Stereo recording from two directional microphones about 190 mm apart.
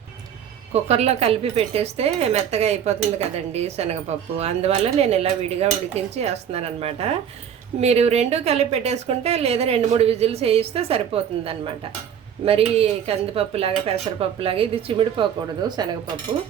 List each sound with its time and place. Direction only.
0.7 s a woman's voice: 35° right (ahead or behind)